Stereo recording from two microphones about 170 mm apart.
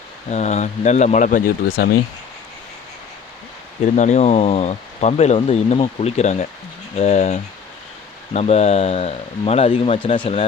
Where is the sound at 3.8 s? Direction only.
45° left (ahead or behind).